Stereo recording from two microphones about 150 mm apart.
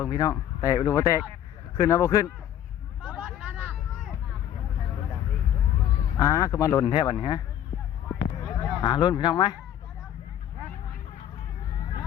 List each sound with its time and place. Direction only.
0.0 s speech: 25° left (ahead or behind)
3.0 s vehicle: 10° left (ahead or behind)
3.3 s vehicle: 10° right (ahead or behind)
6.1 s speech: 20° left (ahead or behind)
6.8 s speech: 35° left (ahead or behind)
8.5 s speech: 30° left (ahead or behind)